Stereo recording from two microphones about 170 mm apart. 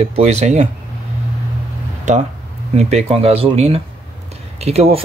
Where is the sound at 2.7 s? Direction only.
35° right (ahead or behind).